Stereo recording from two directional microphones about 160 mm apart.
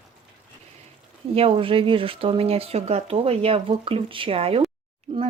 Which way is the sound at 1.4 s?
35° right (ahead or behind).